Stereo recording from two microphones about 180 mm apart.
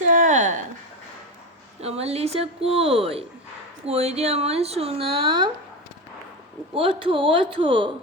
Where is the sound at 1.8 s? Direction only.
35° right (ahead or behind).